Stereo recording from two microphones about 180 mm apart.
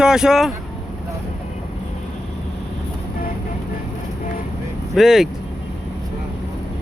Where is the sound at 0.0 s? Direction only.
5° right (ahead or behind).